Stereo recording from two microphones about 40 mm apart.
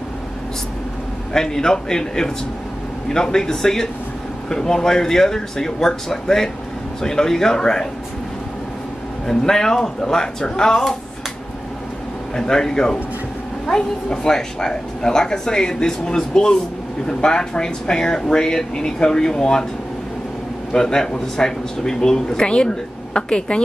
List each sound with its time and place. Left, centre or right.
1.3 s a woman's voice: centre
9.3 s a woman's voice: centre
12.4 s a woman's voice: centre
20.7 s a woman's voice: centre